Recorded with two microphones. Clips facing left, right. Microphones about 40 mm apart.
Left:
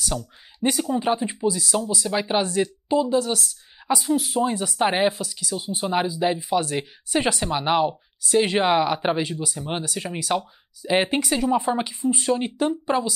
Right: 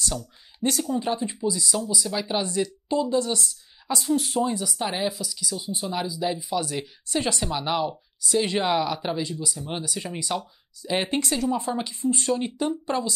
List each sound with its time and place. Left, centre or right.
0.6 s speech: left
4.4 s speech: left
10.8 s speech: centre